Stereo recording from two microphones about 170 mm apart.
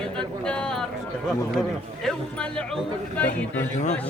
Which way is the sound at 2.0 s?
5° left (ahead or behind).